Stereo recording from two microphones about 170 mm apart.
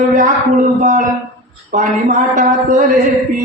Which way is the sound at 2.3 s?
50° right (ahead or behind).